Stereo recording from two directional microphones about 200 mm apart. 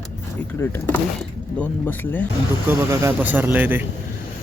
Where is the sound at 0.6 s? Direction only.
10° left (ahead or behind).